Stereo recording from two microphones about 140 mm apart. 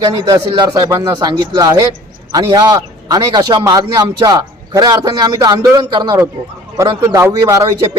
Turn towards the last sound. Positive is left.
turn(degrees=-25)  # may be behind; listen again after turning